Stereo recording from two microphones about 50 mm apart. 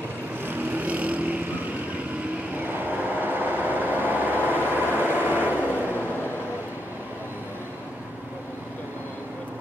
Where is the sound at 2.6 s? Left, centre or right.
Right.